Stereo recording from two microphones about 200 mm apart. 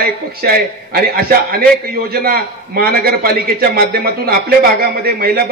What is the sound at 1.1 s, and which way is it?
A man's voice, 45° right (ahead or behind).